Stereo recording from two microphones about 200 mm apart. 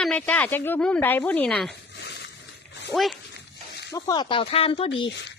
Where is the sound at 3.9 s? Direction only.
20° left (ahead or behind).